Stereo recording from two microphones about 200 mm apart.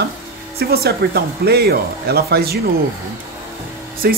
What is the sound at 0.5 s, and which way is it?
Speech, 50° right (ahead or behind).